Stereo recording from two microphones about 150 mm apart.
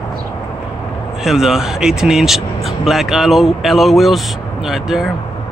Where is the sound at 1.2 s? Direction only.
5° right (ahead or behind).